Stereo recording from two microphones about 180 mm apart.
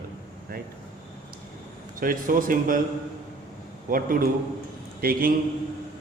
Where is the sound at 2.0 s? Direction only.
50° right (ahead or behind).